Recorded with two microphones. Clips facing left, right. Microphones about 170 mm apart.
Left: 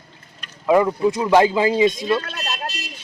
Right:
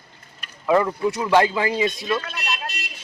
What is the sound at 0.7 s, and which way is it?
Speech, 15° left (ahead or behind).